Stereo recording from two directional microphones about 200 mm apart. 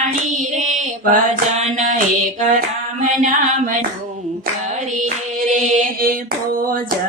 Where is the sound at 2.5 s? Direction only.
40° right (ahead or behind).